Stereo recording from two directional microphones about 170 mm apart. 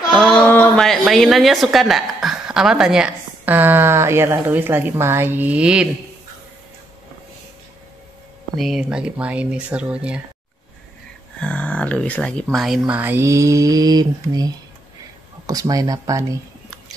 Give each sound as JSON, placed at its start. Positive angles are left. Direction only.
{"t": 0.1, "sound": "a woman's voice", "side_deg": 5}
{"t": 8.5, "sound": "speech", "side_deg": 0}
{"t": 8.8, "sound": "mantra", "side_deg": -5}
{"t": 11.3, "sound": "speech", "side_deg": 5}
{"t": 12.5, "sound": "mantra", "side_deg": 0}
{"t": 15.4, "sound": "speech", "side_deg": -20}